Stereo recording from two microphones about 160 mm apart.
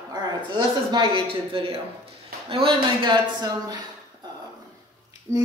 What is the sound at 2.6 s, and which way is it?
Speech, 30° right (ahead or behind).